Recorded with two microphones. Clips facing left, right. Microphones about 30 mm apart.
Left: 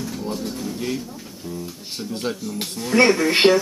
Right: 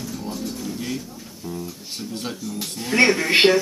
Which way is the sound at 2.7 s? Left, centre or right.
Centre.